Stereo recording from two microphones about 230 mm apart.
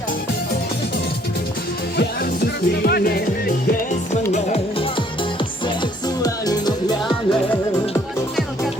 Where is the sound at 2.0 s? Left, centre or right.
Left.